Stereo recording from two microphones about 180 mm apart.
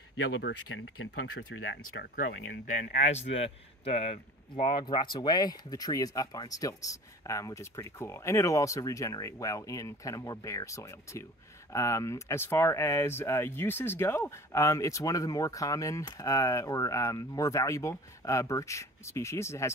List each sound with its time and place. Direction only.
0.4 s speech: 85° left
2.7 s speech: 40° left (ahead or behind); by 19.7 s 15° left (ahead or behind)